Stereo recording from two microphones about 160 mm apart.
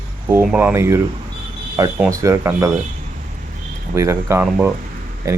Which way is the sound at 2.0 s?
20° right (ahead or behind).